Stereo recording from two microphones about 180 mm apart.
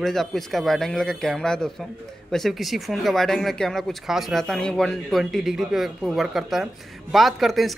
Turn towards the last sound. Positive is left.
turn(degrees=0)  # may be behind; listen again after turning